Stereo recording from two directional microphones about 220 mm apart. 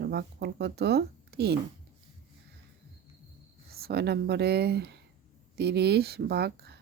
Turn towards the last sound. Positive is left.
turn(degrees=-45)  # may be behind; listen again after turning